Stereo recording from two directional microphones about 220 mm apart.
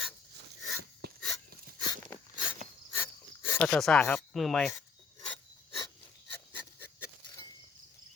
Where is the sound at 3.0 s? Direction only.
10° left (ahead or behind).